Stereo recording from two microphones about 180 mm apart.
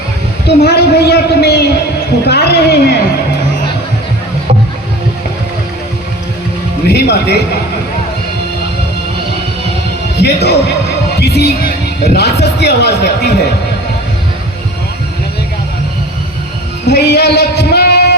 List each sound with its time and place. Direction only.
0.4 s a man's voice: 65° left (ahead or behind)
6.8 s a man's voice: 65° left (ahead or behind)
10.2 s a man's voice: 65° left (ahead or behind)
16.8 s singing: 65° left (ahead or behind)